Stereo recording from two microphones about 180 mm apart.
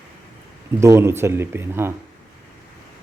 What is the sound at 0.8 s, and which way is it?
Speech, 15° right (ahead or behind).